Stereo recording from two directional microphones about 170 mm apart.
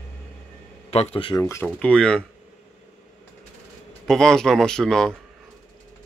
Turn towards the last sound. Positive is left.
turn(degrees=5)  # may be behind; listen again after turning